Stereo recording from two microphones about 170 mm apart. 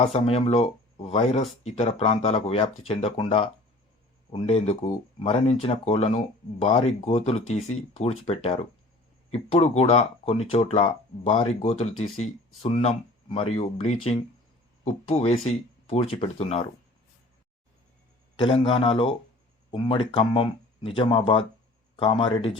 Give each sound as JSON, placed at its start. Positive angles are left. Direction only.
{"t": 0.0, "sound": "speech", "side_deg": 40}
{"t": 18.3, "sound": "speech", "side_deg": 30}